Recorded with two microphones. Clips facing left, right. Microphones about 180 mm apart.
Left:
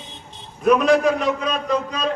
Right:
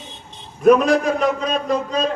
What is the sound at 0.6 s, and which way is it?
A man's voice, 45° right (ahead or behind).